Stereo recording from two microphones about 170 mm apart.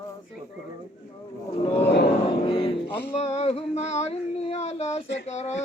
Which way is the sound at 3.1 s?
40° left (ahead or behind).